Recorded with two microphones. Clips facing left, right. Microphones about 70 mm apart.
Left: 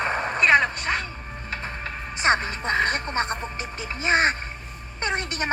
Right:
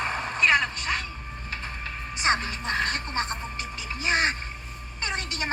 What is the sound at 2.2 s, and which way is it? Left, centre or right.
Music, left.